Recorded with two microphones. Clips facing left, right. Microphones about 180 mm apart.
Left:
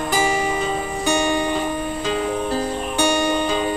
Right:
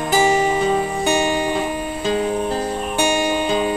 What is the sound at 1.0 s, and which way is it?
Music, 20° right (ahead or behind).